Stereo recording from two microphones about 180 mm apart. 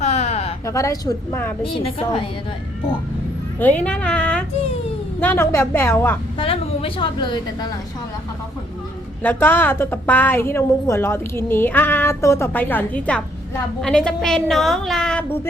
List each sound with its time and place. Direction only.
0.0 s a sound: 35° left (ahead or behind)
0.6 s a woman's voice: 15° left (ahead or behind)
1.8 s a woman's voice: 30° left (ahead or behind)
3.6 s a woman's voice: 10° left (ahead or behind)
6.4 s a woman's voice: 30° left (ahead or behind)
9.2 s a woman's voice: 10° left (ahead or behind)